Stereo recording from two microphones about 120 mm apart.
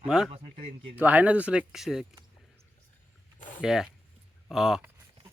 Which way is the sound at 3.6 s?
5° right (ahead or behind).